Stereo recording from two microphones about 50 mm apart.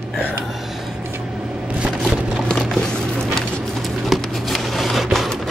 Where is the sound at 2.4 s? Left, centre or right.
Centre.